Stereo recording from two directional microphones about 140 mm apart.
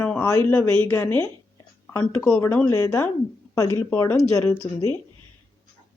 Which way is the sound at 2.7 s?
25° left (ahead or behind).